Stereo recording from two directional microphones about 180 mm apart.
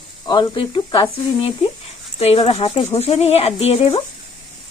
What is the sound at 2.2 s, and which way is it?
Speech, 35° left (ahead or behind).